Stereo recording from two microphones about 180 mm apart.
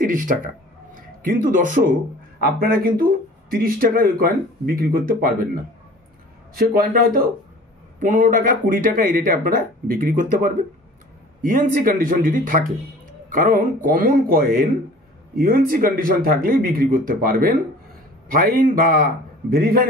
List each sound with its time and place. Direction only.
0.0 s speech: 50° right (ahead or behind)
1.4 s speech: 45° right (ahead or behind)
6.5 s speech: 55° right (ahead or behind)